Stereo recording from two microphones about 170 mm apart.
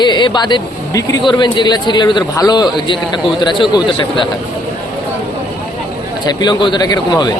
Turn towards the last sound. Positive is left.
turn(degrees=25)  # may be behind; listen again after turning